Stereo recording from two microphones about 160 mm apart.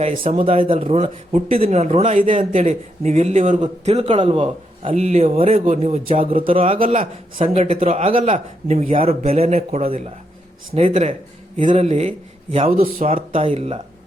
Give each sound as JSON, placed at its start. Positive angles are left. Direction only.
{"t": 0.4, "sound": "a man's voice", "side_deg": -35}
{"t": 6.7, "sound": "a man's voice", "side_deg": -60}
{"t": 7.3, "sound": "speech", "side_deg": -40}
{"t": 8.8, "sound": "a man's voice", "side_deg": -60}
{"t": 9.0, "sound": "speech", "side_deg": -40}
{"t": 13.0, "sound": "a man's voice", "side_deg": -50}
{"t": 13.3, "sound": "speech", "side_deg": -35}